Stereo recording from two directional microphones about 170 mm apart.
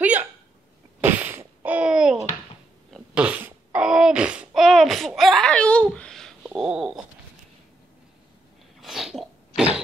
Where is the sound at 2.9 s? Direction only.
5° right (ahead or behind).